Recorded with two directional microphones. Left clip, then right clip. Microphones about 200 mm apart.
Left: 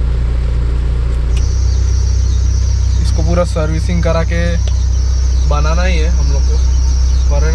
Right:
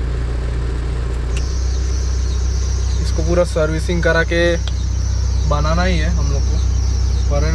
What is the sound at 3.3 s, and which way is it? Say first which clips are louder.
Speech: right 1 dB; centre (ahead or behind).